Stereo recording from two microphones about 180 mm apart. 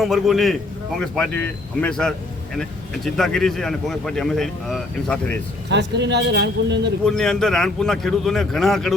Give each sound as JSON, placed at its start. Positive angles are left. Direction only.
{"t": 0.0, "sound": "speech", "side_deg": 0}
{"t": 5.6, "sound": "a man's voice", "side_deg": -75}
{"t": 7.0, "sound": "speech", "side_deg": 5}